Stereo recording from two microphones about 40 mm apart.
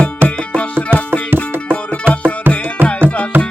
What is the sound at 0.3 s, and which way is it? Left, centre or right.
Music, left.